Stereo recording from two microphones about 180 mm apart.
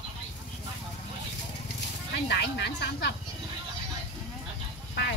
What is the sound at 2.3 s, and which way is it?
Speech, 65° left (ahead or behind).